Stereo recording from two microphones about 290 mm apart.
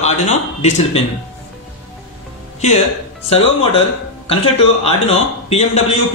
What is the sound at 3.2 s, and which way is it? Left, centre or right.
Speech, left.